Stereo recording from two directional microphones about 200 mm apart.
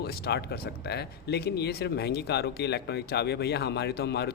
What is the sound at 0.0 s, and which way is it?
Speech, 50° left (ahead or behind).